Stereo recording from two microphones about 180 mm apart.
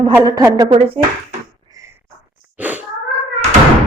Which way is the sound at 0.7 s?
30° right (ahead or behind).